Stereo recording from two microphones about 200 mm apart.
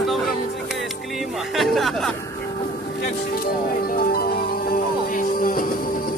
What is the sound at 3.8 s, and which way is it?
Music, 50° left (ahead or behind).